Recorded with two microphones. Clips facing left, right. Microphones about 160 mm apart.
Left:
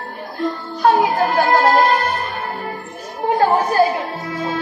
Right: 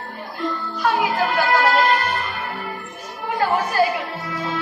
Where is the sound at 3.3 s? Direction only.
40° left (ahead or behind).